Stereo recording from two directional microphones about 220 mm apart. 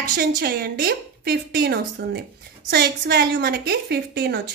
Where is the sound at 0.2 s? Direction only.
45° right (ahead or behind).